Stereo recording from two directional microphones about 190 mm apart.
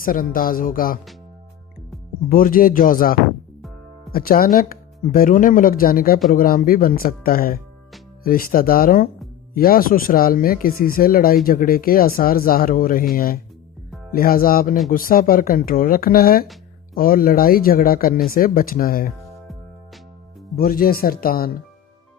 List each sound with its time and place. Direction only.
0.0 s speech: 50° left (ahead or behind)
2.3 s speech: 50° left (ahead or behind)
20.6 s speech: 50° left (ahead or behind)